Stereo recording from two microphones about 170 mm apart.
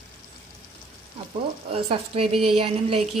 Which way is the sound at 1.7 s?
35° right (ahead or behind).